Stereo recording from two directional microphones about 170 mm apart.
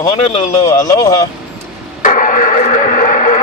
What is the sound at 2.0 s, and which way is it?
Radio, 50° left (ahead or behind).